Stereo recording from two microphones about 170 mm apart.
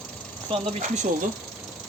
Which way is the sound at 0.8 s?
45° right (ahead or behind).